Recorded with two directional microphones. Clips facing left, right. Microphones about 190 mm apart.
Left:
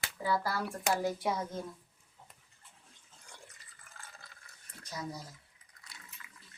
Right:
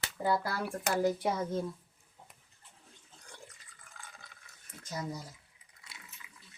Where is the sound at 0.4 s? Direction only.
60° right (ahead or behind).